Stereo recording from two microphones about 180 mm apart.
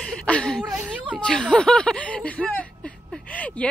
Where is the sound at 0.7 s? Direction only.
5° right (ahead or behind).